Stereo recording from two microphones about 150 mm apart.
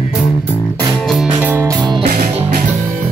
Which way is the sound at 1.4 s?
15° right (ahead or behind).